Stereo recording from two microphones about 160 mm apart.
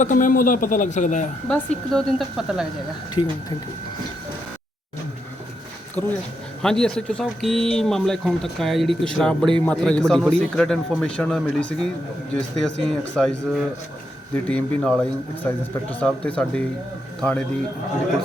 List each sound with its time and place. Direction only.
0.0 s a man's voice: 55° left (ahead or behind)
1.5 s speech: 5° left (ahead or behind)
5.9 s speech: 10° left (ahead or behind)
14.4 s speech: 5° left (ahead or behind)